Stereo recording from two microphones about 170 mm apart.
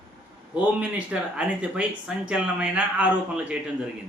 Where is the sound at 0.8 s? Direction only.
5° right (ahead or behind).